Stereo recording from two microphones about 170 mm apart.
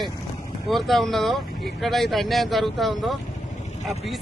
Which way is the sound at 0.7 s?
Centre (ahead or behind).